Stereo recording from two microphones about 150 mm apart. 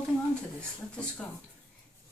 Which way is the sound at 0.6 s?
5° left (ahead or behind).